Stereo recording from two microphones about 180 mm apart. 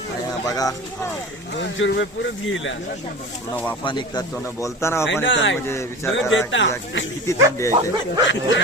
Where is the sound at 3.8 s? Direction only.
25° left (ahead or behind).